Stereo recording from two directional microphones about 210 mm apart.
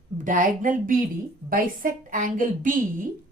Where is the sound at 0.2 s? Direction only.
40° right (ahead or behind).